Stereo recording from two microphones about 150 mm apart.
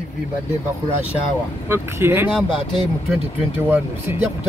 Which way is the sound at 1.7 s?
15° right (ahead or behind).